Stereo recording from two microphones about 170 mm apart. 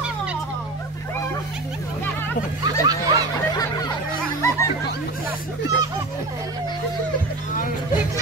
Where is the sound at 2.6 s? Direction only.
20° right (ahead or behind).